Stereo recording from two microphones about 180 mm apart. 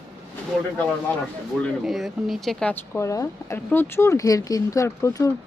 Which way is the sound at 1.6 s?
Centre (ahead or behind).